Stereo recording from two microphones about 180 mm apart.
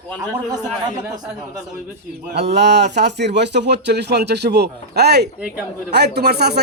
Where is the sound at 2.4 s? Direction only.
70° right (ahead or behind).